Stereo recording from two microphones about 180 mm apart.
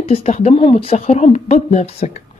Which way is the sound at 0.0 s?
35° left (ahead or behind).